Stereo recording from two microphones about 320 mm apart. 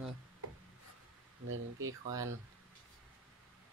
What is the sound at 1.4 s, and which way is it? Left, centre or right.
Speech, right.